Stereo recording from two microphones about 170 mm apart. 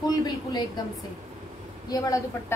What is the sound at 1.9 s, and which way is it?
Speech, 20° left (ahead or behind).